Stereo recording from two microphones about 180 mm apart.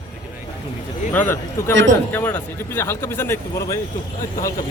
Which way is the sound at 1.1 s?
10° left (ahead or behind).